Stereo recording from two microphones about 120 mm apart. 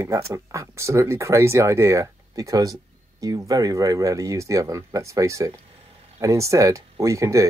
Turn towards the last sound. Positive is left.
turn(degrees=-25)  # may be behind; listen again after turning